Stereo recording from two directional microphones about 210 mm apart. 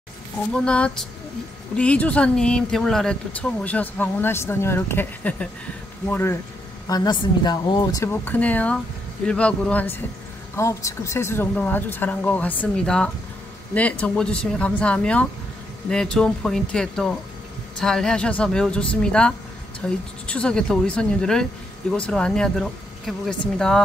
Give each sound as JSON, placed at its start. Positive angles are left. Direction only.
{"t": 0.5, "sound": "speech", "side_deg": 5}